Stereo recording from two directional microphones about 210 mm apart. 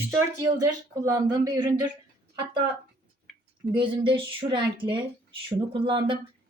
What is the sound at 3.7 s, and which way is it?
A woman's voice, 25° right (ahead or behind).